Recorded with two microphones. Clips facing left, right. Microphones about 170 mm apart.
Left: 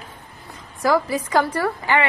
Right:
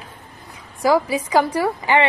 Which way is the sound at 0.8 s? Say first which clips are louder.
Right 2 dB; 15° right (ahead or behind).